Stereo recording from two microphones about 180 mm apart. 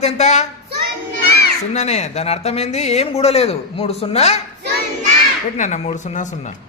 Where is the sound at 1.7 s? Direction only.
40° left (ahead or behind).